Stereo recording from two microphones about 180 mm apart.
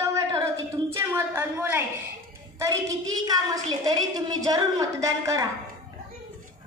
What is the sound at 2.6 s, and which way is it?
A woman's voice, 20° right (ahead or behind).